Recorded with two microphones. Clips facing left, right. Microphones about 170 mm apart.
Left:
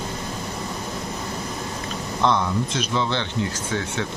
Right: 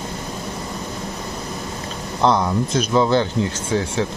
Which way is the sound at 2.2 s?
35° right (ahead or behind).